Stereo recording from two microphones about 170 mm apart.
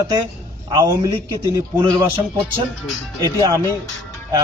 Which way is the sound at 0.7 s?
20° right (ahead or behind).